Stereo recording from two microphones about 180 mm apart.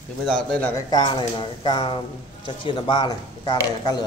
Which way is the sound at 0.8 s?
25° left (ahead or behind).